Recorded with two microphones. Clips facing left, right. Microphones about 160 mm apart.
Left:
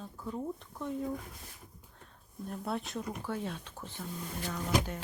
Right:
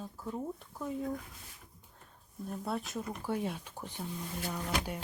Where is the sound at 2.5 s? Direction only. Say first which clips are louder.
Even; centre (ahead or behind).